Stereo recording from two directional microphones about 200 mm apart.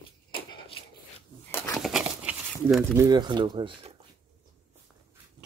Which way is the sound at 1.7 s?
Centre (ahead or behind).